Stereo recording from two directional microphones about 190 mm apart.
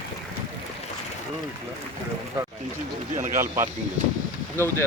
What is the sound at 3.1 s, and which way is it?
Speech, 40° right (ahead or behind).